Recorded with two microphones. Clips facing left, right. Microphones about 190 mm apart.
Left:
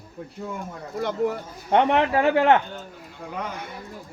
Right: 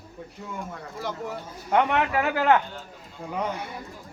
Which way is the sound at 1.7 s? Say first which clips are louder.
Left 3 dB; 30° left (ahead or behind).